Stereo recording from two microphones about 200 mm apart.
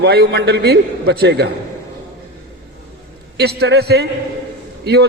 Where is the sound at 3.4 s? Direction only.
55° right (ahead or behind).